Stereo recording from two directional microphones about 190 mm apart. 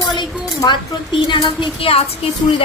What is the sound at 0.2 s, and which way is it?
A woman's voice, 25° left (ahead or behind).